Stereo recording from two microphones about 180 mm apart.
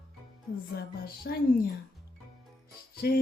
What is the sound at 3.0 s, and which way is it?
Speech, 60° left (ahead or behind).